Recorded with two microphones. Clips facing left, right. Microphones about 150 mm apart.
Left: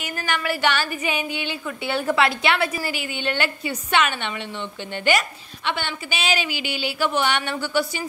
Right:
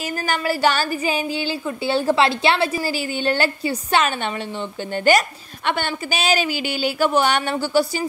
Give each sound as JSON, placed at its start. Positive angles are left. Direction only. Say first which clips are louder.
{"t": 0.0, "sound": "a woman's voice", "louder": "right 3 dB", "side_deg": -35}